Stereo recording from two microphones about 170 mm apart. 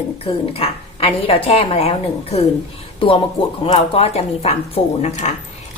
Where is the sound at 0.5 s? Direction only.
35° left (ahead or behind).